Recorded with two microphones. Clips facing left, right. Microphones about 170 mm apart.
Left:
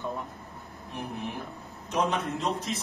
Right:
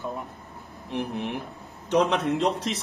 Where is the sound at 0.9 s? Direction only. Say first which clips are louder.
Right 6 dB; 80° right.